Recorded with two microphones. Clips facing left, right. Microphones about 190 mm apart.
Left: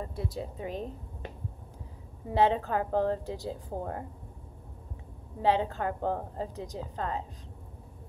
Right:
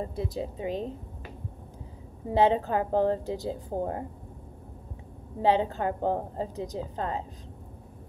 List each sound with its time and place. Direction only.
0.0 s a woman's voice: 25° right (ahead or behind)
2.2 s a woman's voice: 25° right (ahead or behind)
5.4 s a woman's voice: 30° right (ahead or behind)